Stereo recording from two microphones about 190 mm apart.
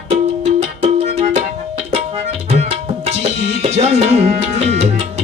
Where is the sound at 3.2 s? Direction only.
35° right (ahead or behind).